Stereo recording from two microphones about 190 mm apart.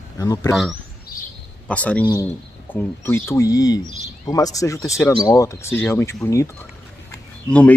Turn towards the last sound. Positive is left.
turn(degrees=5)  # may be behind; listen again after turning